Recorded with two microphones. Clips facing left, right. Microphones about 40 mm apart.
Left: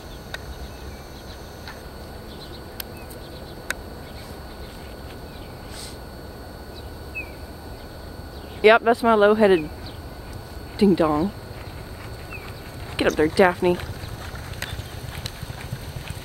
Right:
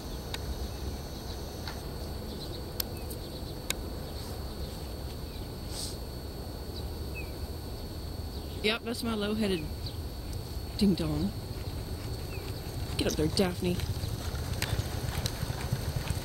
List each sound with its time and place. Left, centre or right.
8.5 s speech: left
10.8 s speech: left
12.9 s speech: left